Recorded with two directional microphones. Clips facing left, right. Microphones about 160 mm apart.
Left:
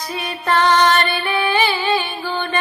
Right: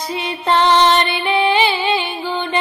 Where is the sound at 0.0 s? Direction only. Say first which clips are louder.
Right 3 dB; 25° right (ahead or behind).